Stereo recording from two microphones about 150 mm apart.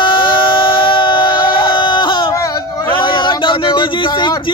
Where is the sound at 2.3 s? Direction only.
25° left (ahead or behind).